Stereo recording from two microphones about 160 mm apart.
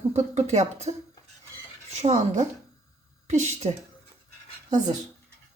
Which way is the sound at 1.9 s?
45° right (ahead or behind).